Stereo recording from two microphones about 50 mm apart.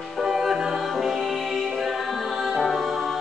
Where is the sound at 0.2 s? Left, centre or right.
Centre.